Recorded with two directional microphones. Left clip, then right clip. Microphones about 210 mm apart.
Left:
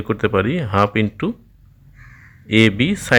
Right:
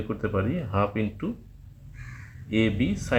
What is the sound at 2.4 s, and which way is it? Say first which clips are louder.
Speech: left 10 dB; 40° left (ahead or behind).